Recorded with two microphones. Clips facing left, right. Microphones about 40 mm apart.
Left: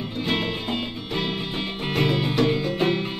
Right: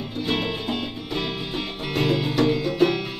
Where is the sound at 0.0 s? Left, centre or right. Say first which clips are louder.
Even; left.